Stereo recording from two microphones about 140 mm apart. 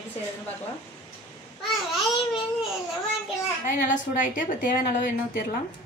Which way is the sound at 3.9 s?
70° left (ahead or behind).